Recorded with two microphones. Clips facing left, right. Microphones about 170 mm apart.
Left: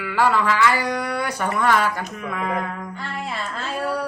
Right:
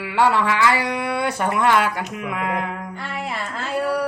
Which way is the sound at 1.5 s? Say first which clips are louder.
Right 1 dB; 20° right (ahead or behind).